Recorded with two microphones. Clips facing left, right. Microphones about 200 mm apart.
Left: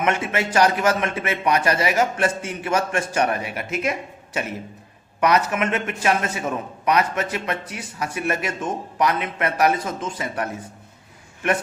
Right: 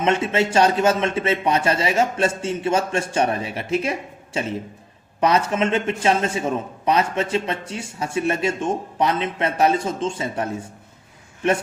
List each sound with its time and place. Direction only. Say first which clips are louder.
0.0 s a man's voice: right 3 dB; 25° right (ahead or behind)